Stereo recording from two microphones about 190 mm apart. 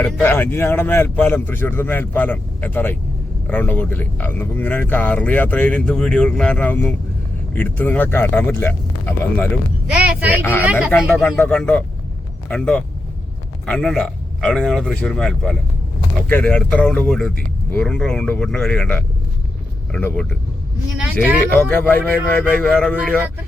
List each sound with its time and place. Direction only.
0.0 s speech: 10° left (ahead or behind)
9.9 s speech: 10° right (ahead or behind)
11.2 s speech: 10° left (ahead or behind)
21.0 s speech: 5° right (ahead or behind)
21.5 s speech: 10° left (ahead or behind)